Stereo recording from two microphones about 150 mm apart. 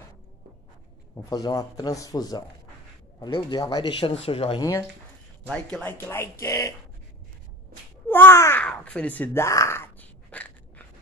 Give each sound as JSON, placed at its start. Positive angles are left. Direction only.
{"t": 1.1, "sound": "a man's voice", "side_deg": 25}
{"t": 4.0, "sound": "speech", "side_deg": 40}
{"t": 4.6, "sound": "a man's voice", "side_deg": 25}
{"t": 5.5, "sound": "a man's voice", "side_deg": 5}
{"t": 8.1, "sound": "a sound", "side_deg": 15}